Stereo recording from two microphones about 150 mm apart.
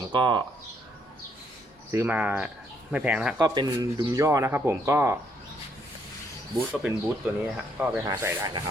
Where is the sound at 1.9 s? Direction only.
15° right (ahead or behind).